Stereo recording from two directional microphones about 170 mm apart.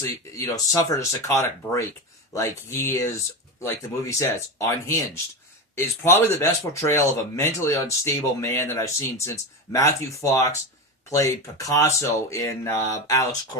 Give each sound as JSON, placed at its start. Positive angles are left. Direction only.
{"t": 0.0, "sound": "speech", "side_deg": 20}
{"t": 10.3, "sound": "speech", "side_deg": 20}